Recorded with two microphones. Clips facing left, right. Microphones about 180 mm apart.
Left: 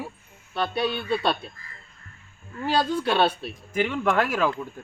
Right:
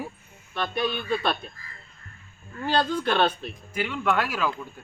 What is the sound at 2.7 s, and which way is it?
Speech, 10° left (ahead or behind).